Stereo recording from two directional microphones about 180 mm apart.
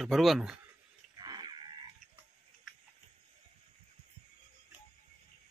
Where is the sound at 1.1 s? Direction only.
25° right (ahead or behind).